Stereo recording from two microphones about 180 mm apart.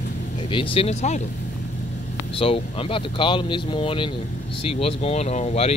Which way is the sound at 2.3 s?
30° left (ahead or behind).